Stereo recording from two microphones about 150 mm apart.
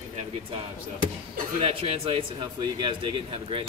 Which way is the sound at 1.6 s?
40° right (ahead or behind).